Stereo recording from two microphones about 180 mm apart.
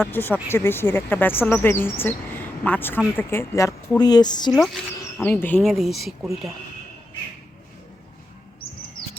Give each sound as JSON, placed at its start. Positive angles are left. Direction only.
{"t": 0.0, "sound": "speech", "side_deg": 10}
{"t": 4.5, "sound": "speech", "side_deg": 0}